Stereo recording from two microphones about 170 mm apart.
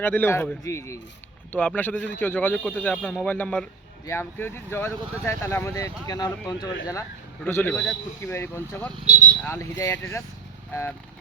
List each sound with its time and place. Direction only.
0.0 s speech: 15° left (ahead or behind)
7.4 s speech: 10° left (ahead or behind)